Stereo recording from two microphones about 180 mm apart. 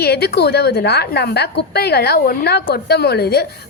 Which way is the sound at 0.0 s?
60° left (ahead or behind).